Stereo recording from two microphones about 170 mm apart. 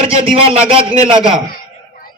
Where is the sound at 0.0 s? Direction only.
35° right (ahead or behind).